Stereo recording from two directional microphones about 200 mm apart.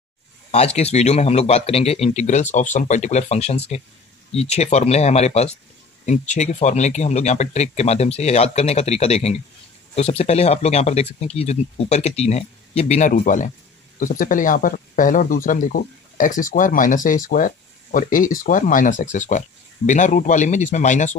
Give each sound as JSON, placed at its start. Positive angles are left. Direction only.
{"t": 0.5, "sound": "speech", "side_deg": 30}